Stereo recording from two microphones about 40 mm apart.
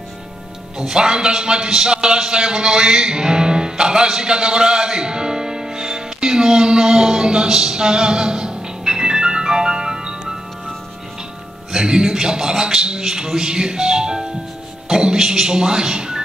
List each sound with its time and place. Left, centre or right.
0.7 s a man's voice: centre
2.0 s music: centre
11.7 s a man's voice: centre